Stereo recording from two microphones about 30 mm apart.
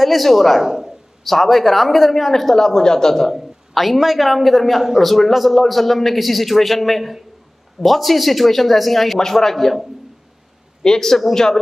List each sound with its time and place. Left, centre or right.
0.0 s a man's voice: centre
0.6 s a sound: centre
1.2 s speech: centre
3.3 s a man's voice: centre
9.2 s speech: centre
10.8 s a man's voice: centre